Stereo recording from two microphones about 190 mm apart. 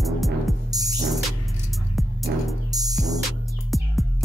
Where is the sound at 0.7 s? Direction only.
20° right (ahead or behind).